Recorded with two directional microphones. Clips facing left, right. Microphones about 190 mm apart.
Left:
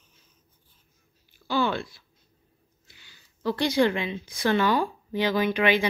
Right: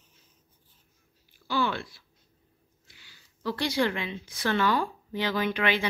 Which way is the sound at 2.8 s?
20° left (ahead or behind).